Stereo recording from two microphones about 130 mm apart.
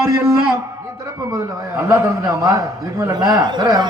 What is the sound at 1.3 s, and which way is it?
A man's voice, 25° right (ahead or behind).